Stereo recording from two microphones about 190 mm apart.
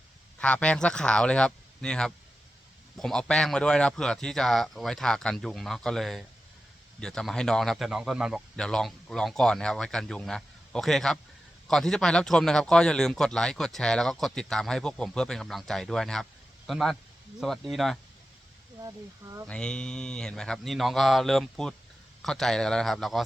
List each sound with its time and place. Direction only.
0.3 s speech: 5° left (ahead or behind)
18.8 s speech: 20° right (ahead or behind)
19.5 s speech: 5° left (ahead or behind)